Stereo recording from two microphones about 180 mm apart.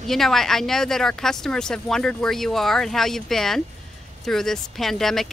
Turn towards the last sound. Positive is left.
turn(degrees=0)  # may be behind; listen again after turning